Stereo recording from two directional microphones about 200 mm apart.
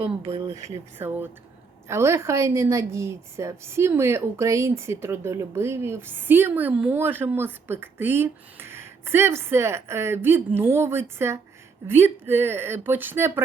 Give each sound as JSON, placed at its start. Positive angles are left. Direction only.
{"t": 0.0, "sound": "speech", "side_deg": -30}
{"t": 0.9, "sound": "a woman's voice", "side_deg": -10}